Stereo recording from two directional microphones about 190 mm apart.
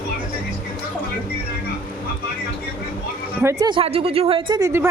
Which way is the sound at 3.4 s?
15° right (ahead or behind).